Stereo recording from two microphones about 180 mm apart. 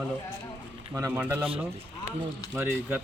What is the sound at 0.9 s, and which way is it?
Speech, 15° right (ahead or behind).